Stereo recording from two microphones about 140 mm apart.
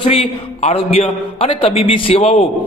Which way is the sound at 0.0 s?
45° left (ahead or behind).